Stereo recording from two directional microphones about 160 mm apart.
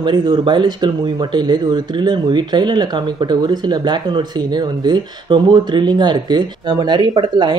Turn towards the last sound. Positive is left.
turn(degrees=-25)  # may be behind; listen again after turning